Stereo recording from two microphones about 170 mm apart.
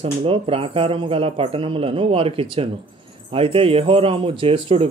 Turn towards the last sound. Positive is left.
turn(degrees=-30)  # may be behind; listen again after turning